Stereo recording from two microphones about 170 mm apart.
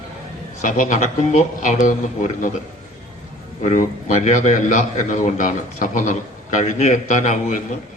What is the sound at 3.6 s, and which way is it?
A man's voice, 45° left (ahead or behind).